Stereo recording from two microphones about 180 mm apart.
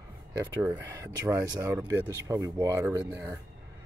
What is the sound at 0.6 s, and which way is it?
Speech, 15° right (ahead or behind).